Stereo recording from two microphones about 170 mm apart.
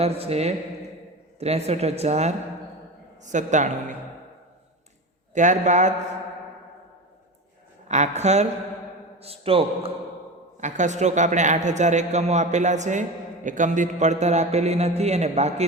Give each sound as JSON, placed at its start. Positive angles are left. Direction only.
{"t": 0.0, "sound": "speech", "side_deg": -35}
{"t": 3.3, "sound": "a man's voice", "side_deg": -45}
{"t": 5.3, "sound": "a man's voice", "side_deg": -45}
{"t": 7.9, "sound": "speech", "side_deg": -45}
{"t": 10.6, "sound": "a man's voice", "side_deg": -45}